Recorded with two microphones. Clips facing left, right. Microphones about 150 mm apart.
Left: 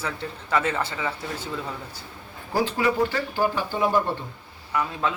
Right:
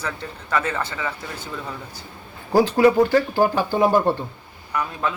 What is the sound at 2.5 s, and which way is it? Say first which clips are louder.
Speech: right 8 dB; 40° right (ahead or behind).